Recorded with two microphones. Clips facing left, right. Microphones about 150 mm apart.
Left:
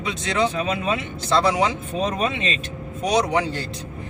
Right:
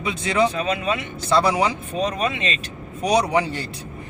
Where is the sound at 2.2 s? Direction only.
30° left (ahead or behind).